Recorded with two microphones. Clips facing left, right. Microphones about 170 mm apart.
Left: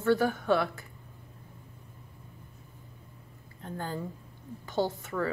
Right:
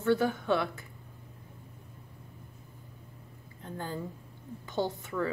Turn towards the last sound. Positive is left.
turn(degrees=-20)  # may be behind; listen again after turning